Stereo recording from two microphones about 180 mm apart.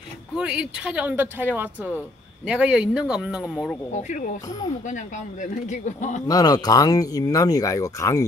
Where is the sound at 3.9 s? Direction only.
40° left (ahead or behind).